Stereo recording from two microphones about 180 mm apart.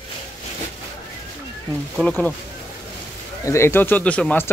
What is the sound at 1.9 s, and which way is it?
Speech, 5° left (ahead or behind).